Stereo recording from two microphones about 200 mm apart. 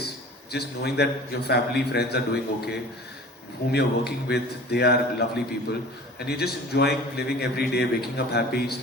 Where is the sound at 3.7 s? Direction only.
55° left (ahead or behind).